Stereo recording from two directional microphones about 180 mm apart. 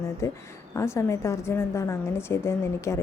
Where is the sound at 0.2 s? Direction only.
15° left (ahead or behind).